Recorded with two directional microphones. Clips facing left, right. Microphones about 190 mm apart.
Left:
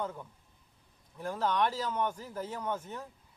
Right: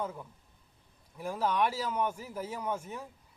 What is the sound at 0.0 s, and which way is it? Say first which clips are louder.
A man's voice: even; 5° right (ahead or behind).